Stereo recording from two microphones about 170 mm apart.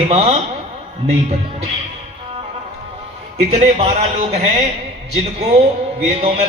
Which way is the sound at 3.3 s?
40° right (ahead or behind).